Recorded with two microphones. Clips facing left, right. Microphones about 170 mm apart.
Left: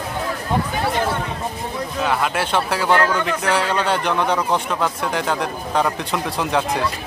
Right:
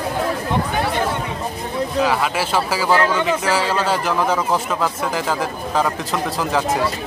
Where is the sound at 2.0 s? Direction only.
Centre (ahead or behind).